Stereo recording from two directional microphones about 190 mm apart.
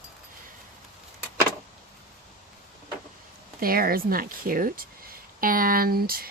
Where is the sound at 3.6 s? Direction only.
50° right (ahead or behind).